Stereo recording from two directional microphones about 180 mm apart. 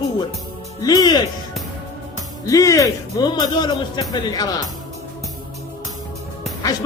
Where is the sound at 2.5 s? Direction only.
20° left (ahead or behind).